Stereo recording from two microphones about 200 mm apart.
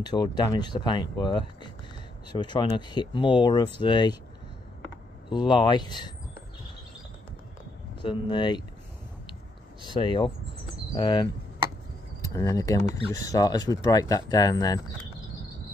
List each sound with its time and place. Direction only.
0.0 s speech: 20° left (ahead or behind)
5.3 s speech: 25° left (ahead or behind)
8.0 s speech: 25° left (ahead or behind)
9.9 s speech: 25° left (ahead or behind)